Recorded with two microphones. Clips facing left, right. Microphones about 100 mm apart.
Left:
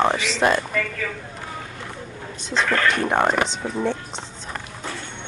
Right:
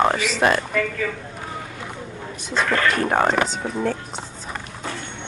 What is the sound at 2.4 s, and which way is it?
Speech, 5° right (ahead or behind).